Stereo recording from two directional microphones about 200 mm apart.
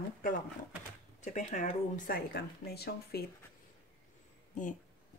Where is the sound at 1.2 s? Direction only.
35° left (ahead or behind); by 3.3 s 50° left (ahead or behind).